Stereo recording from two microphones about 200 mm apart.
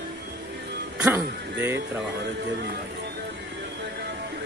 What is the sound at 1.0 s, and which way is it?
Speech, 10° right (ahead or behind).